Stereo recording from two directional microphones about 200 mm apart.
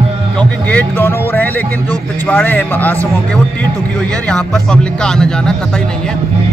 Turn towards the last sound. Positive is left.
turn(degrees=5)  # may be behind; listen again after turning